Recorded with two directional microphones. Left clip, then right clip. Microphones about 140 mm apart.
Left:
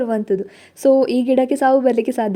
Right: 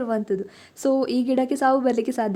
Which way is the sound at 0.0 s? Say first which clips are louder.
Left 5 dB; 20° left (ahead or behind).